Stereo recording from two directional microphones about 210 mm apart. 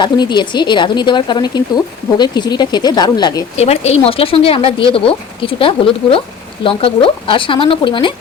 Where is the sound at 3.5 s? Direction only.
30° left (ahead or behind).